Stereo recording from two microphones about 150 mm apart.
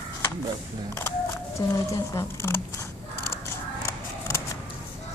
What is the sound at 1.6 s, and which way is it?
Speech, 30° left (ahead or behind).